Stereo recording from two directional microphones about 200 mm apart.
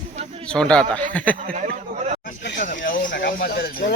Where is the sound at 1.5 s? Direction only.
35° right (ahead or behind).